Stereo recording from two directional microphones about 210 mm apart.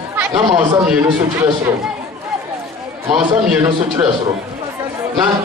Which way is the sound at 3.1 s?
5° right (ahead or behind).